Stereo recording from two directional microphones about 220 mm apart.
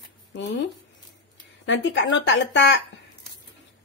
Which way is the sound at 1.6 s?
55° left (ahead or behind).